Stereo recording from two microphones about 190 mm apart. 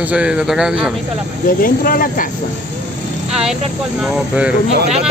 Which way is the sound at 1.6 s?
50° left (ahead or behind).